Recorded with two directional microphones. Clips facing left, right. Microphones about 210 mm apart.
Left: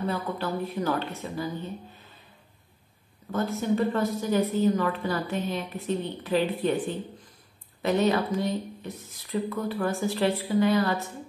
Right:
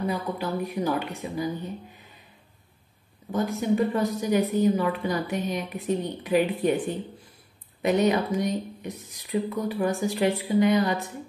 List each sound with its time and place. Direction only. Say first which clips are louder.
0.0 s a woman's voice: right 1 dB; 15° right (ahead or behind)
3.3 s a woman's voice: right 2 dB; 15° right (ahead or behind)